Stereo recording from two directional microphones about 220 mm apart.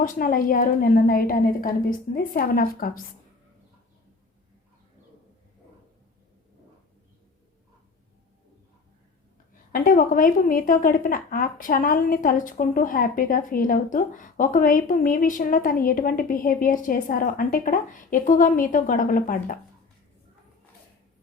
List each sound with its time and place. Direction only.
0.0 s a woman's voice: 40° left (ahead or behind)
9.7 s a woman's voice: 40° left (ahead or behind)